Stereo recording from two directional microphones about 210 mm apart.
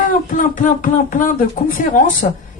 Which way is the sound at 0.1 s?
40° left (ahead or behind).